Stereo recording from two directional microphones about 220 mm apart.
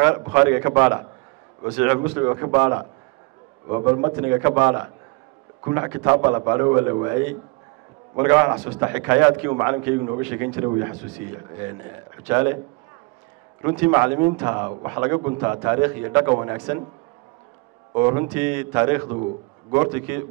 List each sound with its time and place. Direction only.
0.0 s a man's voice: 15° right (ahead or behind)
10.2 s a man's voice: 10° right (ahead or behind)
12.3 s a man's voice: 10° right (ahead or behind)
13.7 s a man's voice: 15° right (ahead or behind)
17.9 s a man's voice: 15° right (ahead or behind)